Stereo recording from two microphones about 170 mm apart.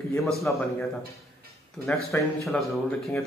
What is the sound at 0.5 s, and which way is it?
Speech, 10° left (ahead or behind).